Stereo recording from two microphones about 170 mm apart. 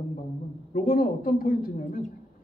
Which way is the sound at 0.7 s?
55° left (ahead or behind).